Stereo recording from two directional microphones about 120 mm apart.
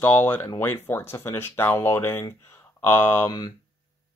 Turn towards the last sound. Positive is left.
turn(degrees=20)  # may be behind; listen again after turning